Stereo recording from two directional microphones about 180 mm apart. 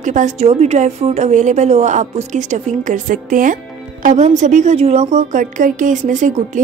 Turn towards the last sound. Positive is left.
turn(degrees=-45)  # may be behind; listen again after turning